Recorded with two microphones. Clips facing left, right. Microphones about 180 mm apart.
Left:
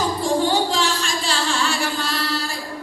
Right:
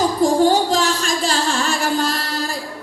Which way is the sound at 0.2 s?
40° right (ahead or behind).